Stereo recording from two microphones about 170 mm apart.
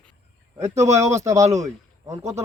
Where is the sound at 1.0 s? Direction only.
15° right (ahead or behind).